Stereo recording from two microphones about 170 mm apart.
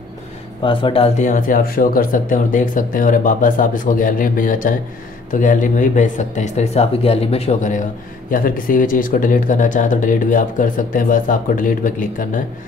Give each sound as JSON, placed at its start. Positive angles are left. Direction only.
{"t": 0.7, "sound": "speech", "side_deg": 30}
{"t": 8.3, "sound": "speech", "side_deg": 55}